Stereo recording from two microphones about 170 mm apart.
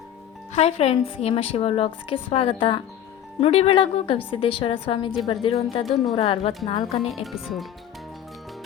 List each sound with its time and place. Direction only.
0.5 s a woman's voice: 35° left (ahead or behind)
5.8 s speech: centre (ahead or behind)
6.1 s a woman's voice: 35° left (ahead or behind)
7.3 s speech: centre (ahead or behind)